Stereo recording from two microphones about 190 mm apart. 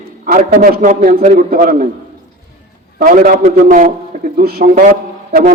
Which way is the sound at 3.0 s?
50° right (ahead or behind).